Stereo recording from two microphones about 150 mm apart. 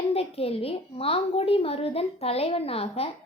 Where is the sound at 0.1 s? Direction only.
40° left (ahead or behind).